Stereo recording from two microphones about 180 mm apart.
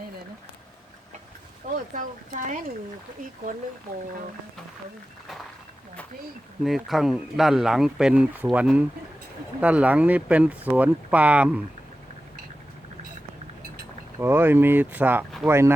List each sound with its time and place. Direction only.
1.9 s speech: 45° right (ahead or behind)
6.6 s speech: centre (ahead or behind)
14.2 s speech: 10° right (ahead or behind)